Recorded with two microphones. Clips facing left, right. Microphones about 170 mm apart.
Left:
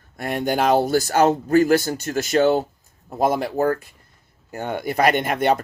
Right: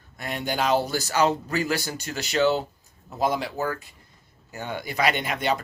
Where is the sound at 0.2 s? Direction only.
50° left (ahead or behind).